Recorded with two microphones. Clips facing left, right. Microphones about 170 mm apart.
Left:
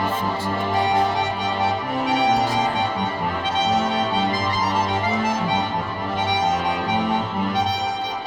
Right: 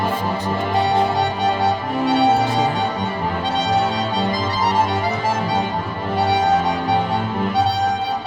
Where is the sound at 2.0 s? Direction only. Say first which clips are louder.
Right 4 dB; 30° right (ahead or behind).